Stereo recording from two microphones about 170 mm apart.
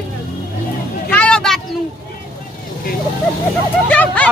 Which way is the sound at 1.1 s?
5° left (ahead or behind).